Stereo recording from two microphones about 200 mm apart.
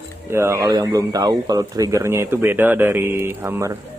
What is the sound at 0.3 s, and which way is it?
Speech, 15° right (ahead or behind).